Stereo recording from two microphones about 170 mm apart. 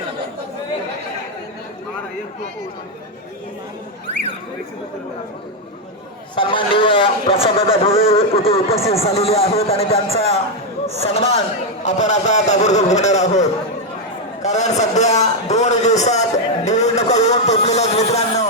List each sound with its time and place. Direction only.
6.3 s a man's voice: 30° left (ahead or behind)
14.4 s a man's voice: 40° left (ahead or behind)